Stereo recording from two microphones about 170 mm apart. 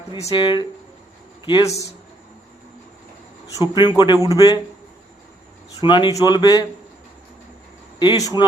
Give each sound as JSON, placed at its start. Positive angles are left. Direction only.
{"t": 0.3, "sound": "speech", "side_deg": 30}
{"t": 3.8, "sound": "speech", "side_deg": 25}
{"t": 5.8, "sound": "speech", "side_deg": 30}
{"t": 7.9, "sound": "speech", "side_deg": 25}